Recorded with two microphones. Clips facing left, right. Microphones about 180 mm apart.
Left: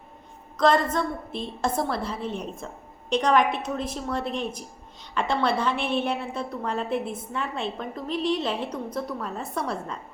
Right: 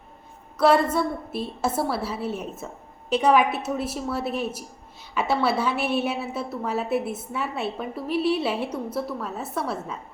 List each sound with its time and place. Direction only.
0.5 s a woman's voice: 10° right (ahead or behind)